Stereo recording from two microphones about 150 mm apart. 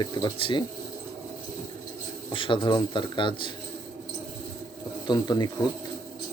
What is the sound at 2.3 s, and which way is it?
A man's voice, 35° left (ahead or behind).